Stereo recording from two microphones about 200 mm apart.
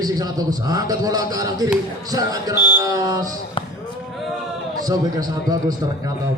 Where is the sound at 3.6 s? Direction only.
25° left (ahead or behind).